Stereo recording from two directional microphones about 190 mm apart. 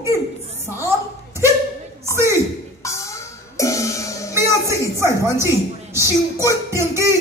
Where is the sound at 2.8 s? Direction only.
15° left (ahead or behind).